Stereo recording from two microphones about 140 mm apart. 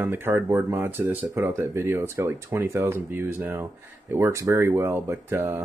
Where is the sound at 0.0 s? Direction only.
15° right (ahead or behind).